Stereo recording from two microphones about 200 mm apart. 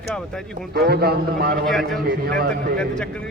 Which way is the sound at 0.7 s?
50° right (ahead or behind).